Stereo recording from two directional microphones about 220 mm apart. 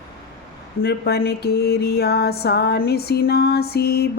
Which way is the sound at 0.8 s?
45° left (ahead or behind).